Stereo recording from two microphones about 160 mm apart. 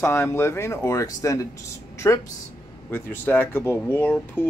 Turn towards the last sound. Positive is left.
turn(degrees=10)  # may be behind; listen again after turning